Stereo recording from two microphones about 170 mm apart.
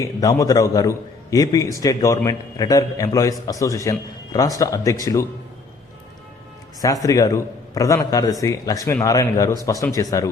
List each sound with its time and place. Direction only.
0.0 s a man's voice: 20° left (ahead or behind)
6.8 s a man's voice: 20° left (ahead or behind)